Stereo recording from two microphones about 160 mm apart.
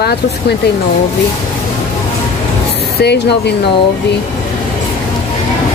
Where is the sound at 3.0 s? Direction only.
90° left.